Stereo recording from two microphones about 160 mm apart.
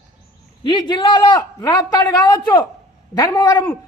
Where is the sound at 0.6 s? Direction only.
30° left (ahead or behind).